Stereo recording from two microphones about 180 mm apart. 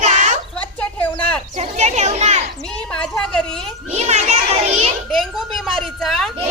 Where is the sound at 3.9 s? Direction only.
40° right (ahead or behind).